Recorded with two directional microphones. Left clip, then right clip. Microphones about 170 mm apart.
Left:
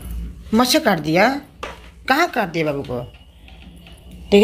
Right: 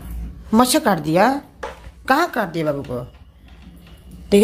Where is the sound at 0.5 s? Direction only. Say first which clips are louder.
Even; 15° right (ahead or behind).